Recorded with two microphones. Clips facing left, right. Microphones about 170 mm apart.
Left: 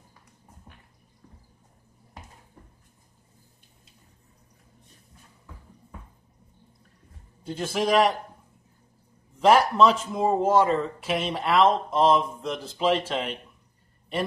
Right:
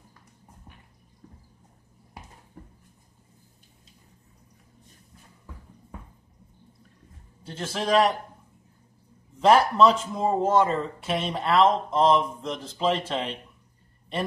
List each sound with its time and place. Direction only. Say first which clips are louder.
7.4 s a man's voice: left 3 dB; 10° left (ahead or behind)
9.4 s speech: even; 5° left (ahead or behind)